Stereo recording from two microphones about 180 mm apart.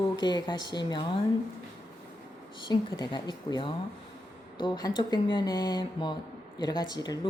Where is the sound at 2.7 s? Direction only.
25° left (ahead or behind).